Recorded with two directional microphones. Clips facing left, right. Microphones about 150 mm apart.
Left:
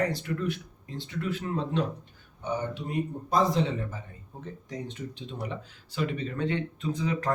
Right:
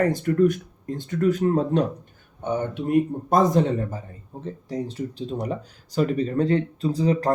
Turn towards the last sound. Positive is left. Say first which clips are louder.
# right 7 dB
turn(degrees=-35)  # may be behind; listen again after turning